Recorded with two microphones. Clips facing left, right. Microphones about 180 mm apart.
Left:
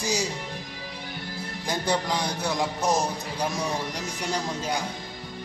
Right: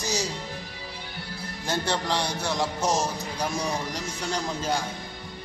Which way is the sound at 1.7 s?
10° left (ahead or behind).